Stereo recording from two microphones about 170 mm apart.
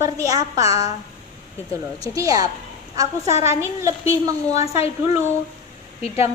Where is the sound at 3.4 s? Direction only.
15° right (ahead or behind).